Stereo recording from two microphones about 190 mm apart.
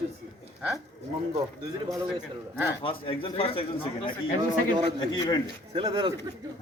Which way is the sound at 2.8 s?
30° left (ahead or behind).